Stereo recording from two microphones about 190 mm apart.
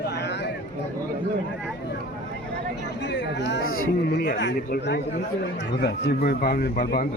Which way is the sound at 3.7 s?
55° left (ahead or behind).